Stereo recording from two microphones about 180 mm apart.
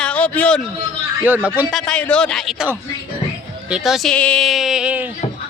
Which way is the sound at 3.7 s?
Centre (ahead or behind).